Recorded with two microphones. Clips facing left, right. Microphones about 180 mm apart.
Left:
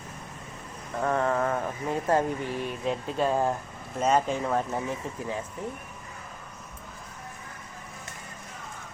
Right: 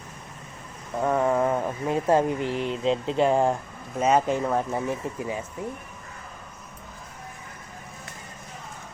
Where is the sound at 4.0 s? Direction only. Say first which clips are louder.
Right 3 dB; 10° right (ahead or behind).